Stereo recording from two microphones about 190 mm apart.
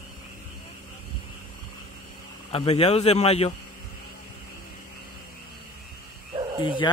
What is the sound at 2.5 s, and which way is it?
Speech, 30° left (ahead or behind).